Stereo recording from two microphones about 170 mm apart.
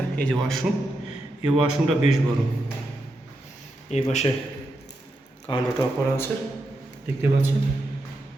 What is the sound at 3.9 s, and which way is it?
Speech, 40° left (ahead or behind).